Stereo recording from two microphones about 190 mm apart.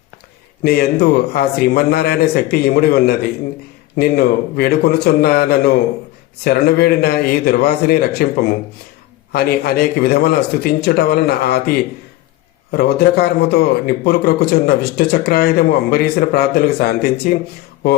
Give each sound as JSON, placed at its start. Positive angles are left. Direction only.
{"t": 0.6, "sound": "a man's voice", "side_deg": 55}
{"t": 12.7, "sound": "a man's voice", "side_deg": 55}